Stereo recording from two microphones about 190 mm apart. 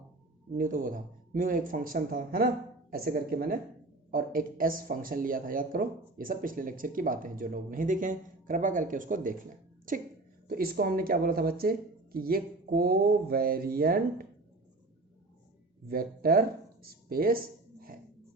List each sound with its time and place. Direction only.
0.5 s speech: 45° right (ahead or behind)
15.9 s speech: 50° right (ahead or behind)
16.8 s a sound: 50° right (ahead or behind)